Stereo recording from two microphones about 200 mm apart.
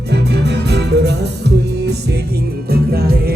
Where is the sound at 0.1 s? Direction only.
55° right (ahead or behind).